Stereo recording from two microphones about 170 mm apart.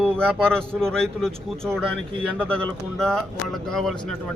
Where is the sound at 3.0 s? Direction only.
5° left (ahead or behind).